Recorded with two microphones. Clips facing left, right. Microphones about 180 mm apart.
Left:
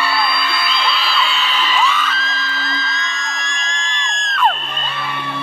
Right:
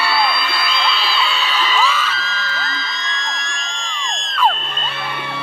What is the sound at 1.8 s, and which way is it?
Music, centre (ahead or behind).